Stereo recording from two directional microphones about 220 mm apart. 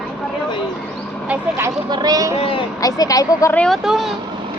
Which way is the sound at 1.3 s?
10° right (ahead or behind).